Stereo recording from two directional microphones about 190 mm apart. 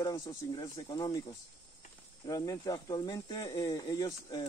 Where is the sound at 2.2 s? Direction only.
20° left (ahead or behind).